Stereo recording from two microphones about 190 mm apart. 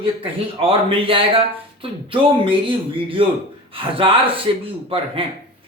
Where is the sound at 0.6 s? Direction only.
30° right (ahead or behind).